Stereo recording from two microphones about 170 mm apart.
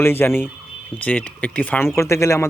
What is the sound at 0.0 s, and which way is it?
Speech, 15° left (ahead or behind).